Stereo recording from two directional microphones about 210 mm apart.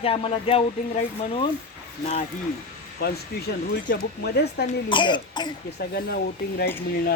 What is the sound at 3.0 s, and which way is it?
Speech, 50° left (ahead or behind).